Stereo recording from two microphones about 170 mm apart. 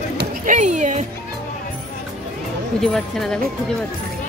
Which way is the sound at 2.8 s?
Centre (ahead or behind).